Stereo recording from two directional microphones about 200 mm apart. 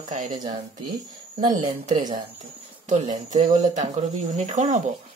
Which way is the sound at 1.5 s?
40° right (ahead or behind).